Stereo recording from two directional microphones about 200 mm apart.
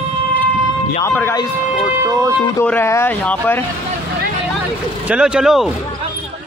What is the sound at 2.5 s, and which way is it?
Speech, 10° left (ahead or behind).